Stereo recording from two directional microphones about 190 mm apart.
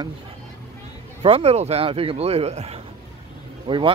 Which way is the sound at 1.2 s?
30° right (ahead or behind).